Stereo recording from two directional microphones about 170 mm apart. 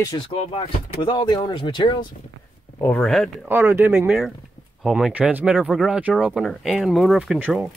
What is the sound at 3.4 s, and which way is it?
Speech, 15° right (ahead or behind).